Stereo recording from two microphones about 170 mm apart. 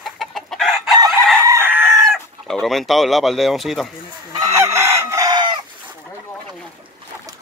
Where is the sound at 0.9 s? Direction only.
20° right (ahead or behind).